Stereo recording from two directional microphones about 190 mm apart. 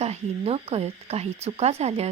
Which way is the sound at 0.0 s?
35° right (ahead or behind).